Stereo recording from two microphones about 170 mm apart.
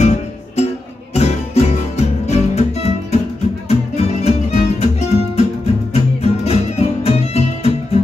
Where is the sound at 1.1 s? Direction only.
40° left (ahead or behind).